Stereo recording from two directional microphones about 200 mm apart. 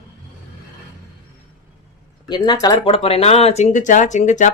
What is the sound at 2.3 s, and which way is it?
Speech, 20° left (ahead or behind).